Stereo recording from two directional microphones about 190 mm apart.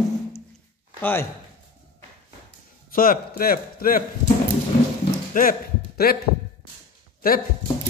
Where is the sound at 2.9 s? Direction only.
50° left (ahead or behind).